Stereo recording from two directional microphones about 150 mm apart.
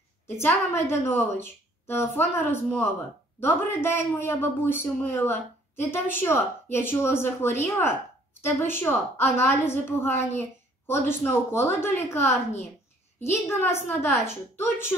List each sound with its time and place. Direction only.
0.4 s a man's voice: 15° left (ahead or behind)